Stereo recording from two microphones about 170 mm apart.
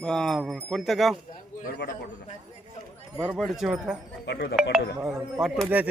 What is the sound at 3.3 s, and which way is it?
Speech, centre (ahead or behind).